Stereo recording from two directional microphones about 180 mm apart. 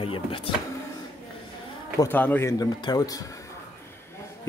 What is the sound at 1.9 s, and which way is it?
Speech, 10° left (ahead or behind).